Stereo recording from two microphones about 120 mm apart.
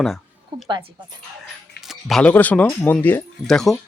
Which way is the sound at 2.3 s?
15° left (ahead or behind).